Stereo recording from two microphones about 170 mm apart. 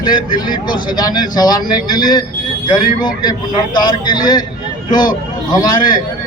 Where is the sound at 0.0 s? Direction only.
25° left (ahead or behind).